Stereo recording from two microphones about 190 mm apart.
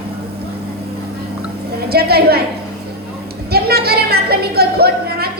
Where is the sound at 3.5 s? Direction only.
55° right (ahead or behind).